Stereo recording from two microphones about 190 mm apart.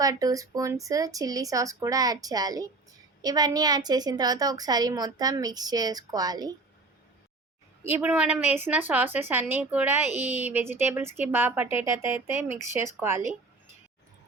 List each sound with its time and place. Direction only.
0.0 s a woman's voice: 20° right (ahead or behind)
7.9 s a woman's voice: 5° right (ahead or behind)